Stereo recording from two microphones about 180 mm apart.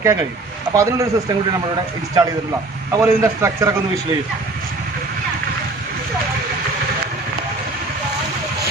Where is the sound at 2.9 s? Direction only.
15° right (ahead or behind).